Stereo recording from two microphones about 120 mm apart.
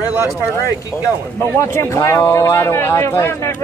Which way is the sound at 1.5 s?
20° left (ahead or behind).